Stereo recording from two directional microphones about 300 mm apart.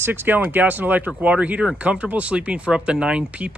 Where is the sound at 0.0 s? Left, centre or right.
Centre.